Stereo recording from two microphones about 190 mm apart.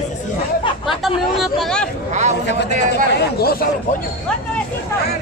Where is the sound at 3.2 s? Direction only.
55° left (ahead or behind).